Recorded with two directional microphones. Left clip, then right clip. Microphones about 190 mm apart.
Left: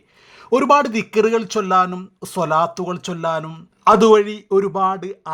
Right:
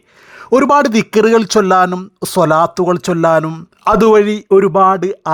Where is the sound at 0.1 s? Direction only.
25° right (ahead or behind).